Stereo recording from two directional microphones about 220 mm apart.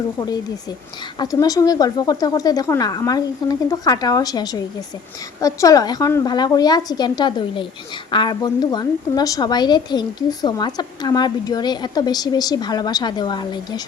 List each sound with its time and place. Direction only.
0.2 s a woman's voice: 15° left (ahead or behind)